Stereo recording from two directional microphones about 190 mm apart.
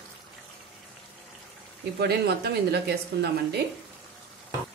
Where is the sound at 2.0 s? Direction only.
60° right (ahead or behind).